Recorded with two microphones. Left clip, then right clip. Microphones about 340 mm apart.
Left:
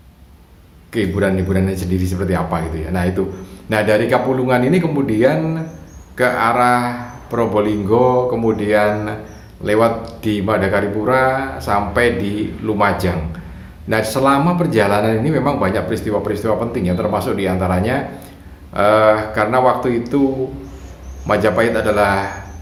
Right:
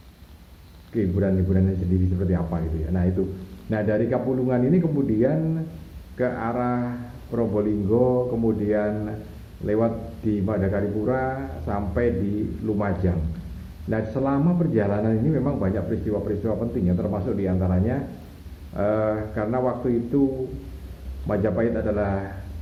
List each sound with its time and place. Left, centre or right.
0.9 s speech: left
21.2 s speech: left